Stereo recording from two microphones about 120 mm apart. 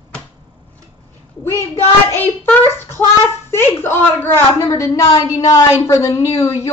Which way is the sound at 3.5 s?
20° left (ahead or behind).